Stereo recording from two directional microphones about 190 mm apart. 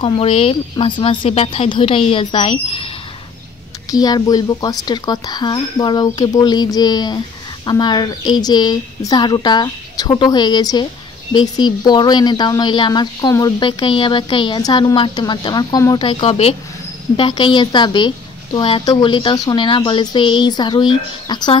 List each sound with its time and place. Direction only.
0.0 s speech: 30° left (ahead or behind)
3.9 s speech: 20° left (ahead or behind)